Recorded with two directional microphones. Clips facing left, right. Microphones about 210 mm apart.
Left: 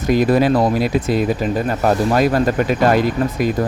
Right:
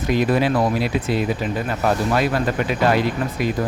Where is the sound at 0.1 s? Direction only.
40° left (ahead or behind).